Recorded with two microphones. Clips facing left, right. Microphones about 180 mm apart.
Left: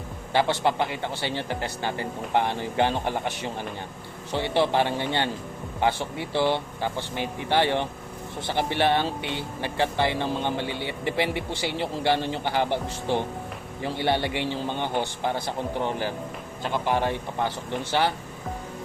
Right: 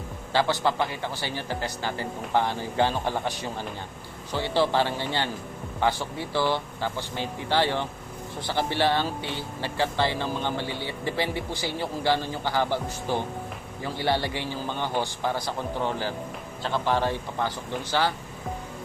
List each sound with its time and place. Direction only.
0.3 s speech: 20° left (ahead or behind)
4.3 s speech: 20° left (ahead or behind)